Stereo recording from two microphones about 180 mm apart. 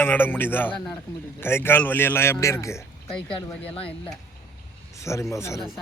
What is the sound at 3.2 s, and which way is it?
Speech, 5° left (ahead or behind).